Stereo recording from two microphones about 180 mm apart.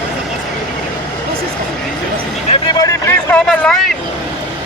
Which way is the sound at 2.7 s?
20° left (ahead or behind).